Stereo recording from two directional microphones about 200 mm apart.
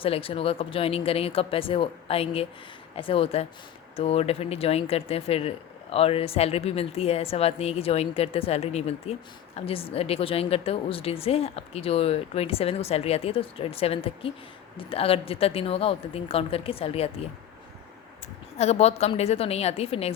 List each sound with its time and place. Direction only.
0.0 s speech: 25° left (ahead or behind)
18.5 s a woman's voice: 30° left (ahead or behind)